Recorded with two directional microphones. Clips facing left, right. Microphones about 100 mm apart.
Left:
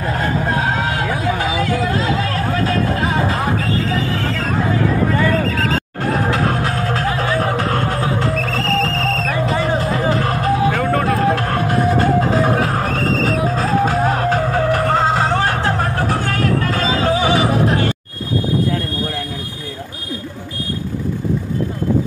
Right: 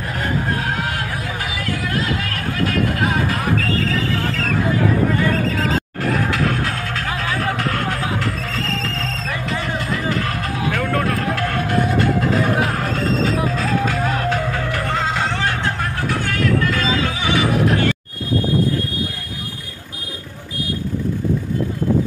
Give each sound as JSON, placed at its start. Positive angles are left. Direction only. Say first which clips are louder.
{"t": 0.5, "sound": "vehicle", "louder": "left 4 dB", "side_deg": 25}
{"t": 6.0, "sound": "music", "louder": "left 3 dB", "side_deg": 35}
{"t": 9.5, "sound": "music", "louder": "left 4 dB", "side_deg": 35}
{"t": 10.8, "sound": "vehicle", "louder": "left 3 dB", "side_deg": 5}
{"t": 11.1, "sound": "music", "louder": "left 5 dB", "side_deg": 30}